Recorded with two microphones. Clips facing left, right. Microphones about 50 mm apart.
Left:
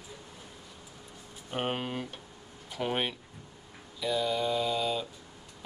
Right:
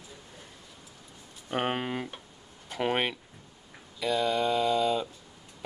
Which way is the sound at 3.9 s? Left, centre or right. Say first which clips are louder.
Right 3 dB; right.